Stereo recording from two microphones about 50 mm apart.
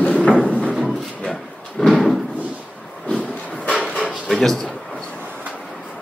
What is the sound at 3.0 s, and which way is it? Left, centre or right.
Vehicle, left.